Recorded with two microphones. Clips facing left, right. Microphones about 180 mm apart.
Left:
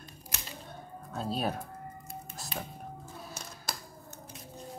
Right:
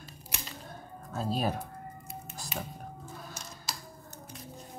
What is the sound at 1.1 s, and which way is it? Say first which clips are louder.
Speech: right 2 dB; centre (ahead or behind).